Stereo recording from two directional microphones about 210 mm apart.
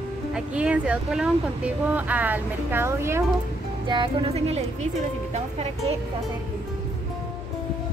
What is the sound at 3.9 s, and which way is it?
Music, 25° right (ahead or behind).